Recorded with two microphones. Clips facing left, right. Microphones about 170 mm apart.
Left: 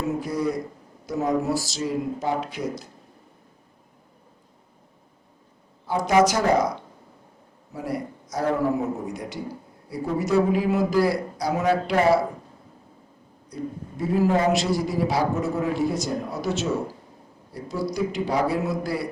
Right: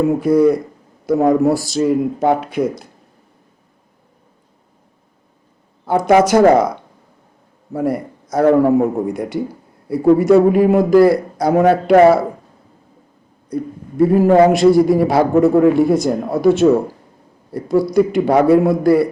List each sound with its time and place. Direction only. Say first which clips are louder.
0.0 s a man's voice: right 13 dB; 55° right (ahead or behind)
6.1 s a man's voice: right 9 dB; 60° right (ahead or behind)
7.7 s a man's voice: right 10 dB; 55° right (ahead or behind)
13.5 s a man's voice: right 8 dB; 55° right (ahead or behind)